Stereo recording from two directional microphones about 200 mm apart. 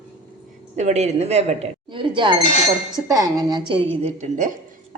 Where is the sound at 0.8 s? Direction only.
35° right (ahead or behind).